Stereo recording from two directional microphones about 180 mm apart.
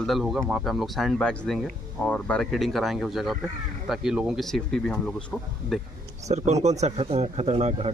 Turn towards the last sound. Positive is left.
turn(degrees=-35)  # may be behind; listen again after turning